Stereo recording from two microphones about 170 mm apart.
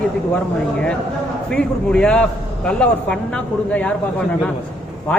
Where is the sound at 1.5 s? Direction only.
5° left (ahead or behind).